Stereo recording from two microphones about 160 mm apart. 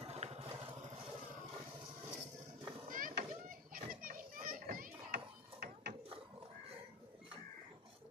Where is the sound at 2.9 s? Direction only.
60° right (ahead or behind); by 5.9 s 75° right (ahead or behind).